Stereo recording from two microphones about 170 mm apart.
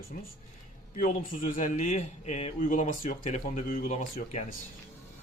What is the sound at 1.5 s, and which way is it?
A man's voice, 50° left (ahead or behind).